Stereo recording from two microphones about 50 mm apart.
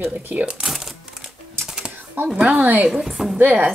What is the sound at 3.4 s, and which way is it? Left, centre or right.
Female singing, right.